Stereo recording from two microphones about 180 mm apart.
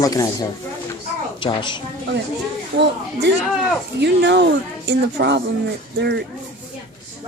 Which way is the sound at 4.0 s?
70° right (ahead or behind).